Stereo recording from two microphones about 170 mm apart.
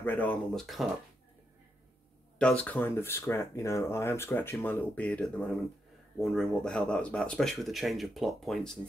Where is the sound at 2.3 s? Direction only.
5° left (ahead or behind).